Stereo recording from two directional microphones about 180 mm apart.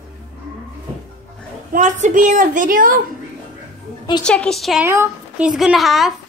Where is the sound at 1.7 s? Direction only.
45° right (ahead or behind).